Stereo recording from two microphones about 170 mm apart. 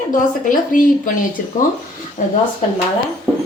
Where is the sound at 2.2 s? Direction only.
45° left (ahead or behind).